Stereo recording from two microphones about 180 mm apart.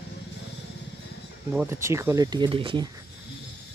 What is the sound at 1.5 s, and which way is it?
Speech, 5° right (ahead or behind).